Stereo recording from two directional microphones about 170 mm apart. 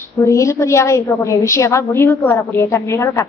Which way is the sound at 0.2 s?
15° left (ahead or behind).